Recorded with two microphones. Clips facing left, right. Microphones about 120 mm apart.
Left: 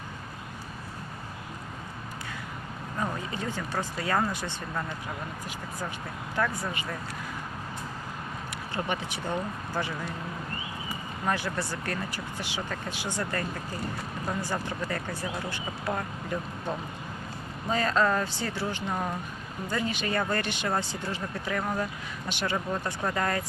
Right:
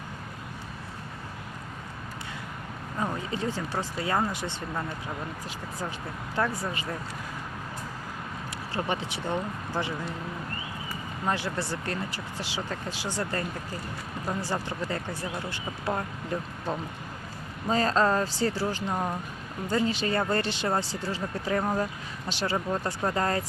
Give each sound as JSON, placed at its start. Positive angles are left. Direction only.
{"t": 3.3, "sound": "speech", "side_deg": -30}
{"t": 6.3, "sound": "speech", "side_deg": -30}
{"t": 8.7, "sound": "speech", "side_deg": -30}
{"t": 11.3, "sound": "speech", "side_deg": -25}
{"t": 14.4, "sound": "speech", "side_deg": -25}
{"t": 17.7, "sound": "speech", "side_deg": -35}
{"t": 18.9, "sound": "speech", "side_deg": -15}
{"t": 19.6, "sound": "speech", "side_deg": -30}